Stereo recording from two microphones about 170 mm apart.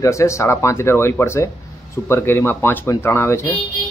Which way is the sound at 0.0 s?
15° left (ahead or behind).